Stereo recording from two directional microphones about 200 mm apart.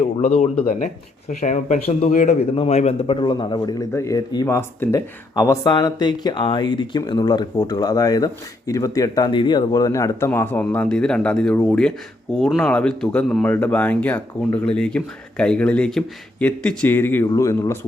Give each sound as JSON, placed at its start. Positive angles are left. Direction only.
{"t": 0.2, "sound": "speech", "side_deg": 35}